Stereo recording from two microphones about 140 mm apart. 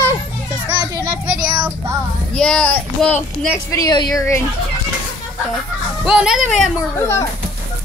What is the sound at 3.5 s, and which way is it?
Speech, 25° left (ahead or behind).